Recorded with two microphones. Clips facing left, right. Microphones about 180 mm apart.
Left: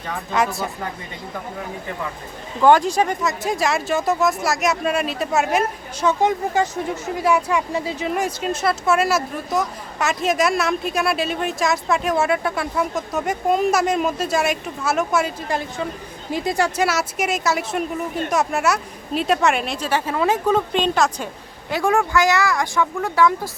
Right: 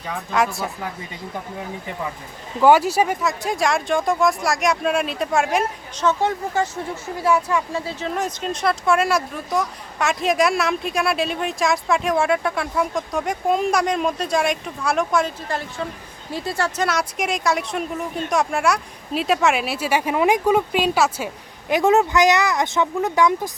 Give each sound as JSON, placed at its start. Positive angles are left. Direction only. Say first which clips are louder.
{"t": 0.3, "sound": "speech", "louder": "even", "side_deg": 0}
{"t": 2.6, "sound": "speech", "louder": "even", "side_deg": -5}
{"t": 21.7, "sound": "speech", "louder": "right 3 dB", "side_deg": -20}